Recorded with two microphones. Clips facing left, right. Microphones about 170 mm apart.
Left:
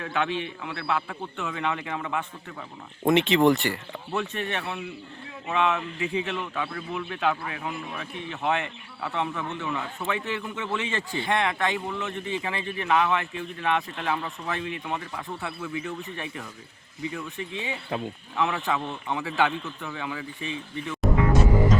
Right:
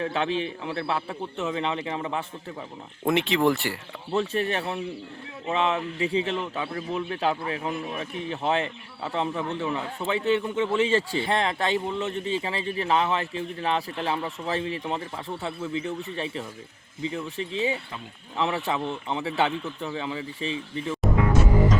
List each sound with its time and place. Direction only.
0.0 s a man's voice: 30° right (ahead or behind)
3.1 s speech: centre (ahead or behind)
4.1 s a man's voice: 30° right (ahead or behind)